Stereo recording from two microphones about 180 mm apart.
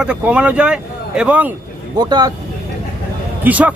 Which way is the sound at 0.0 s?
5° right (ahead or behind).